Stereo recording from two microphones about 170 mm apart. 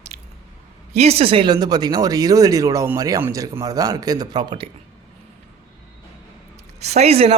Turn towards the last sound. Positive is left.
turn(degrees=-35)  # may be behind; listen again after turning